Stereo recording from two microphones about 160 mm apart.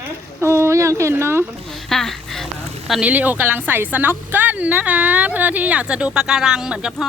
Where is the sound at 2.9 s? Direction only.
10° right (ahead or behind).